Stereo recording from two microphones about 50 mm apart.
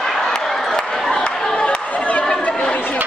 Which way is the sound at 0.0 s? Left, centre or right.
Centre.